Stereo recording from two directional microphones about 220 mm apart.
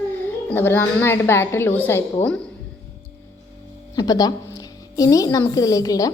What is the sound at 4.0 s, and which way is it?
A woman's voice, 15° left (ahead or behind).